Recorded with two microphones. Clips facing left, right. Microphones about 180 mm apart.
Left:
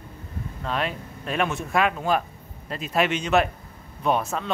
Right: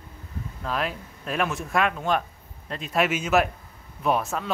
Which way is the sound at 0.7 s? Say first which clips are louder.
Left 1 dB; centre (ahead or behind).